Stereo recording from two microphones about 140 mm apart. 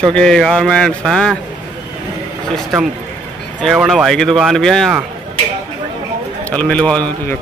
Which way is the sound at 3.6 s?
Centre (ahead or behind).